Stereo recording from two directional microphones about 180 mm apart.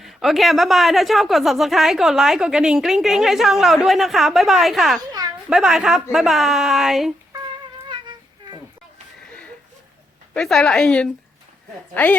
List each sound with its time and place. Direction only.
0.0 s speech: centre (ahead or behind)
4.9 s a child's voice: 20° right (ahead or behind)
5.5 s speech: 5° right (ahead or behind)
7.9 s a sound: 25° right (ahead or behind)
10.3 s a woman's voice: 5° left (ahead or behind)